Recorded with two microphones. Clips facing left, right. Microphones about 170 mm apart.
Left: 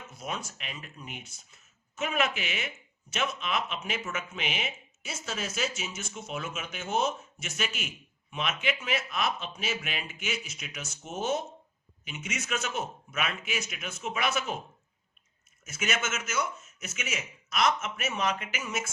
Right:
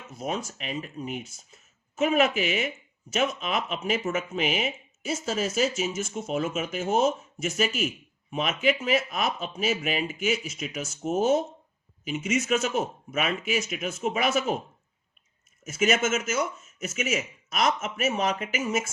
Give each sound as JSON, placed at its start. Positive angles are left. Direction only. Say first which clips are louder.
{"t": 0.1, "sound": "a man's voice", "louder": "right 7 dB", "side_deg": -40}
{"t": 15.7, "sound": "speech", "louder": "right 9 dB", "side_deg": -40}